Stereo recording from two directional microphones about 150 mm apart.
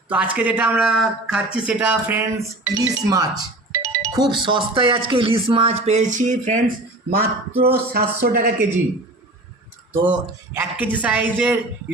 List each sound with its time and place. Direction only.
0.1 s speech: 10° right (ahead or behind)
2.6 s speech: 25° right (ahead or behind); by 6.6 s 55° right (ahead or behind)
7.1 s speech: 90° right
10.1 s speech: 10° right (ahead or behind)